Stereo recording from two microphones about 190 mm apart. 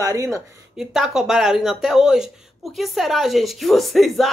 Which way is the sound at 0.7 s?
5° right (ahead or behind).